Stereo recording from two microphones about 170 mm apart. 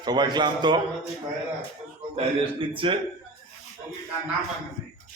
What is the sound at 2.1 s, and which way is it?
Speech, 30° right (ahead or behind).